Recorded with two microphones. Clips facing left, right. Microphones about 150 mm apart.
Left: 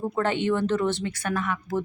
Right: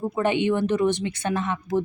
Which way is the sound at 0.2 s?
15° right (ahead or behind).